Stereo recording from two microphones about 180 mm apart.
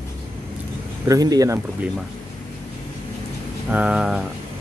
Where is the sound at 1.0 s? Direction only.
20° right (ahead or behind).